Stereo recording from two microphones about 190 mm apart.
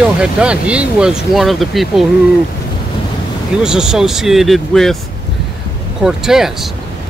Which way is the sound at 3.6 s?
5° right (ahead or behind).